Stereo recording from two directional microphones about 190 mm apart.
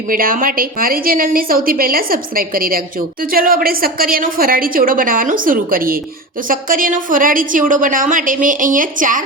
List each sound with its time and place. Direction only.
0.1 s a woman's voice: 50° right (ahead or behind)